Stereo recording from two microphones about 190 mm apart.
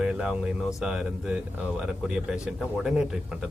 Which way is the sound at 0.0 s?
5° right (ahead or behind).